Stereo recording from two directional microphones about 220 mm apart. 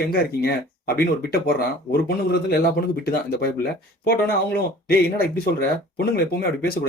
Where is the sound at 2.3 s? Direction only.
45° left (ahead or behind).